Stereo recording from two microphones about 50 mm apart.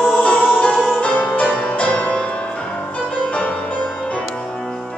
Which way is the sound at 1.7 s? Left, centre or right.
Left.